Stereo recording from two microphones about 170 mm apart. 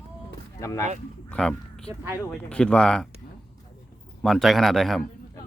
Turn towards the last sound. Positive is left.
turn(degrees=0)  # may be behind; listen again after turning